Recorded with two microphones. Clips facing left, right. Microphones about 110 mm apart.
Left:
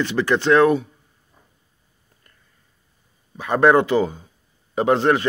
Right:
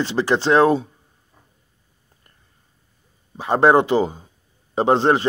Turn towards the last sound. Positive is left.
turn(degrees=-25)  # may be behind; listen again after turning